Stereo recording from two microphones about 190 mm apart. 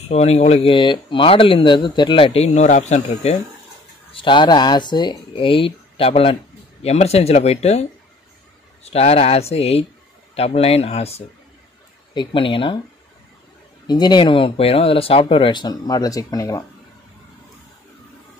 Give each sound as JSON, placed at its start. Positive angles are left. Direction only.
{"t": 0.1, "sound": "speech", "side_deg": 35}
{"t": 4.1, "sound": "speech", "side_deg": 25}
{"t": 8.8, "sound": "speech", "side_deg": 35}
{"t": 13.8, "sound": "speech", "side_deg": 20}